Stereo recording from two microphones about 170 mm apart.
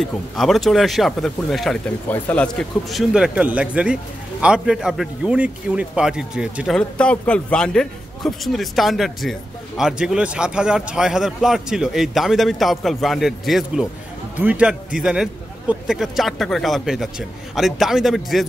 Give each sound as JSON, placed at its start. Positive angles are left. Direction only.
{"t": 0.0, "sound": "a man's voice", "side_deg": 0}
{"t": 6.8, "sound": "a man's voice", "side_deg": 5}